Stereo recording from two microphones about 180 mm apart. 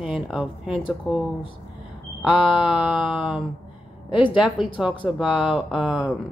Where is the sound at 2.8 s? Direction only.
5° right (ahead or behind).